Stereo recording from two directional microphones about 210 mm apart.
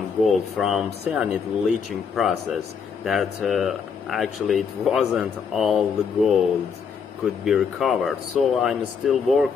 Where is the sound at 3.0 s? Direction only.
Centre (ahead or behind).